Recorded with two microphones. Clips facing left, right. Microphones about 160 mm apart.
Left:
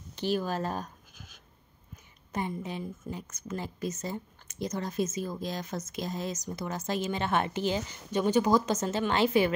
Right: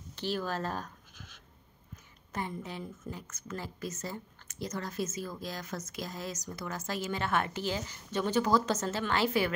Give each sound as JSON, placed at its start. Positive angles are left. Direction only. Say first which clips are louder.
{"t": 0.1, "sound": "writing", "louder": "left 4 dB", "side_deg": 15}
{"t": 2.3, "sound": "a woman's voice", "louder": "left 4 dB", "side_deg": 15}